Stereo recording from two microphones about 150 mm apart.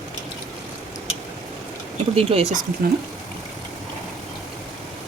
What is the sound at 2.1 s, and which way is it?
Speech, 40° right (ahead or behind).